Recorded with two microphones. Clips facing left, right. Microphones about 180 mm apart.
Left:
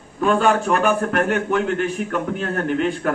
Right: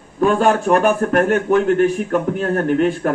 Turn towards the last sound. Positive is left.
turn(degrees=-45)  # may be behind; listen again after turning